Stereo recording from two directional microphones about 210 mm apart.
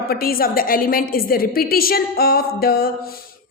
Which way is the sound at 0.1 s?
45° left (ahead or behind).